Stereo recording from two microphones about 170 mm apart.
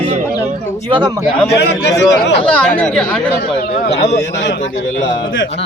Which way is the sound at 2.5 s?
5° left (ahead or behind).